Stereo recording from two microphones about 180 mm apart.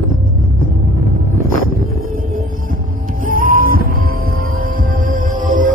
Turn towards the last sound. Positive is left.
turn(degrees=-45)  # may be behind; listen again after turning